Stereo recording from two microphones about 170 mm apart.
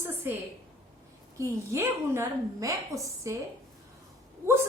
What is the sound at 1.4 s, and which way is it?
A woman's voice, 15° right (ahead or behind).